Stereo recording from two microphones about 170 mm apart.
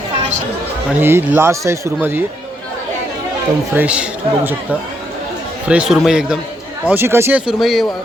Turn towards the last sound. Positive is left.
turn(degrees=0)  # may be behind; listen again after turning